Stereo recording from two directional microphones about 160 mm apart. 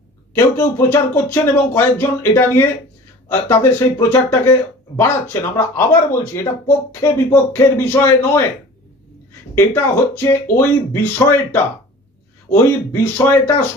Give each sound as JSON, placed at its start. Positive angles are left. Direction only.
{"t": 0.3, "sound": "speech", "side_deg": 15}
{"t": 9.6, "sound": "speech", "side_deg": 15}